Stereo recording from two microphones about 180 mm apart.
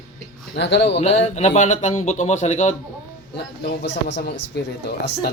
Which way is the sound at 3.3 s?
75° left (ahead or behind).